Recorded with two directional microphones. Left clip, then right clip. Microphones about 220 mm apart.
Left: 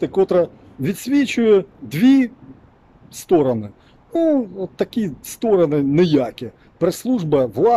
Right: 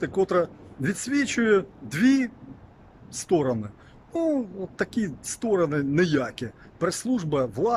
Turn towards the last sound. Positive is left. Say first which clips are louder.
# left 9 dB
turn(degrees=15)  # may be behind; listen again after turning